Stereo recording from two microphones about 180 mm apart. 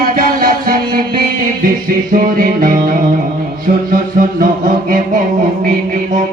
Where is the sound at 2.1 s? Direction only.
50° right (ahead or behind).